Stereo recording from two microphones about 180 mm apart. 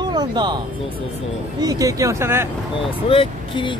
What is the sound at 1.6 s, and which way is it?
Speech, 20° right (ahead or behind).